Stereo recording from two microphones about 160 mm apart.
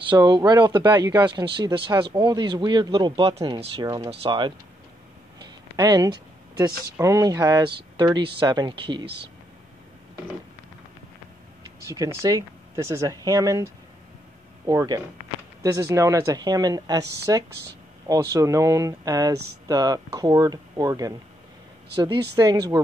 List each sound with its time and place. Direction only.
0.0 s speech: 25° right (ahead or behind)
3.8 s speech: 20° right (ahead or behind)
4.1 s speech: 35° right (ahead or behind)
11.6 s speech: 20° right (ahead or behind)
14.7 s speech: 20° right (ahead or behind)